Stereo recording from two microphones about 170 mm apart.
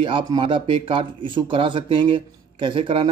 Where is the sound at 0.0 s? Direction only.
30° right (ahead or behind).